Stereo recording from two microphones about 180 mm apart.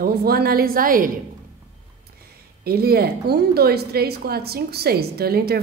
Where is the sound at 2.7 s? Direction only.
60° right (ahead or behind).